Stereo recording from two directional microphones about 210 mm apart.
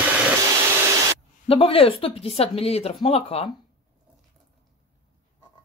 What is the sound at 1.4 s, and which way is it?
Speech, 25° left (ahead or behind).